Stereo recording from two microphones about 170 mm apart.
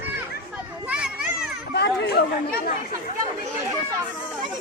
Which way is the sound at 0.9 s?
5° right (ahead or behind).